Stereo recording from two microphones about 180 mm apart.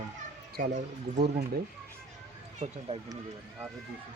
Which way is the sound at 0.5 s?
45° right (ahead or behind).